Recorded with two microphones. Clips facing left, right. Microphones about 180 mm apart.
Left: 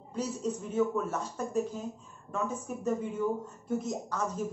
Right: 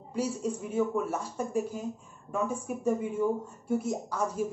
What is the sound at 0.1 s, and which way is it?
Speech, 10° right (ahead or behind).